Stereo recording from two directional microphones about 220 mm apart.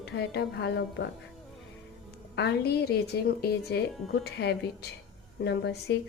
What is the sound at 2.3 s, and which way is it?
A woman's voice, 50° left (ahead or behind).